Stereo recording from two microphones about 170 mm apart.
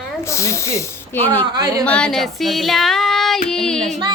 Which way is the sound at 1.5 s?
20° right (ahead or behind).